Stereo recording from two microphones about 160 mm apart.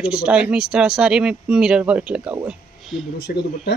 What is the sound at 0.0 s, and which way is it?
Speech, 5° right (ahead or behind).